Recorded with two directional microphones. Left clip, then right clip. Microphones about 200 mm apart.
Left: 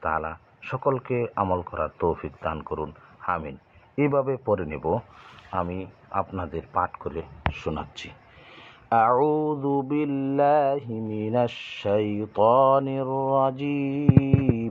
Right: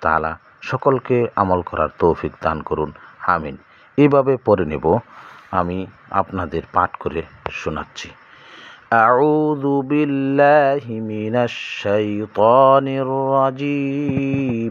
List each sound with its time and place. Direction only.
0.0 s speech: 40° right (ahead or behind)
7.5 s mantra: 15° right (ahead or behind)